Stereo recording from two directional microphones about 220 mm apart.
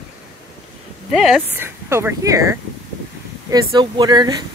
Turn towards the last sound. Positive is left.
turn(degrees=-20)  # may be behind; listen again after turning